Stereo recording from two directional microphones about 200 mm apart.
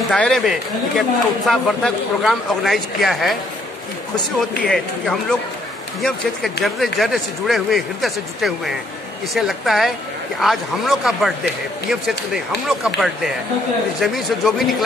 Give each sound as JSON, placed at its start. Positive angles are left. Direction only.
{"t": 0.1, "sound": "speech", "side_deg": 5}
{"t": 4.4, "sound": "speech", "side_deg": 0}